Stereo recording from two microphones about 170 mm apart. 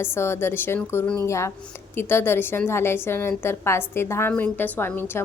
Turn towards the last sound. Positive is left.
turn(degrees=15)  # may be behind; listen again after turning